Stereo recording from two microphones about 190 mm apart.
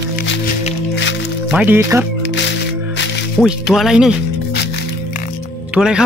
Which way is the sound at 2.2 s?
70° left (ahead or behind).